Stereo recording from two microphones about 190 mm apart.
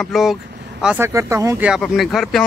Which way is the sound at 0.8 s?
10° right (ahead or behind).